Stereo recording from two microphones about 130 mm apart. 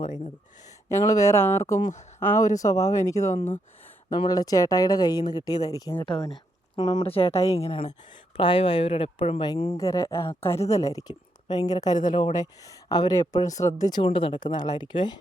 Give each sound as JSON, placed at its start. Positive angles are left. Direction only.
{"t": 0.9, "sound": "speech", "side_deg": 25}
{"t": 1.9, "sound": "speech", "side_deg": 60}
{"t": 2.2, "sound": "speech", "side_deg": 20}
{"t": 7.0, "sound": "speech", "side_deg": 50}
{"t": 9.7, "sound": "speech", "side_deg": 25}
{"t": 14.0, "sound": "speech", "side_deg": 40}